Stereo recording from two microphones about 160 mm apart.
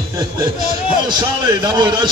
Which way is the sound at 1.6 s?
25° right (ahead or behind).